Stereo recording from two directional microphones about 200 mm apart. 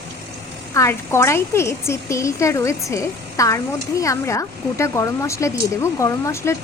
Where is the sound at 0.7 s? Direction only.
15° left (ahead or behind).